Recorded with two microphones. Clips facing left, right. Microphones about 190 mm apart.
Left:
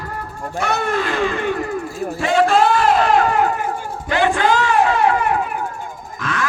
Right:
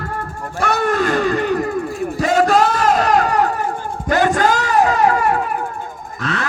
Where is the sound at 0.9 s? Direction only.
45° right (ahead or behind).